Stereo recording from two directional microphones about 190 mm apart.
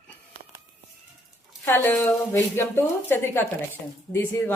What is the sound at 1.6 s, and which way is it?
Speech, 10° left (ahead or behind).